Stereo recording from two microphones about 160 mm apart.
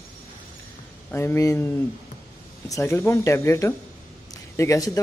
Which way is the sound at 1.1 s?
15° left (ahead or behind).